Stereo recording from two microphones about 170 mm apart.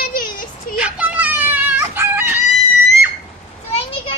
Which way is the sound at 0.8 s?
10° right (ahead or behind).